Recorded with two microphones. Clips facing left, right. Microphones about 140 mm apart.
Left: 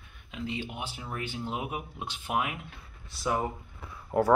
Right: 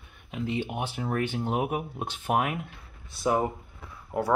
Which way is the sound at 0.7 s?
55° right (ahead or behind).